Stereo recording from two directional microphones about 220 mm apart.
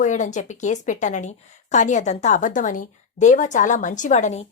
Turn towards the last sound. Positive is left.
turn(degrees=30)  # may be behind; listen again after turning